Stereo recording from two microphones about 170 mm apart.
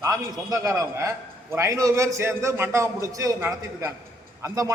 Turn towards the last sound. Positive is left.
turn(degrees=-20)  # may be behind; listen again after turning